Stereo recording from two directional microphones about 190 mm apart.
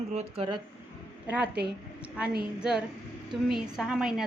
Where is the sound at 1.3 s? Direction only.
5° right (ahead or behind).